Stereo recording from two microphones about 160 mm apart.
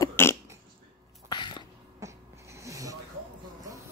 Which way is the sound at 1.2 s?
25° left (ahead or behind).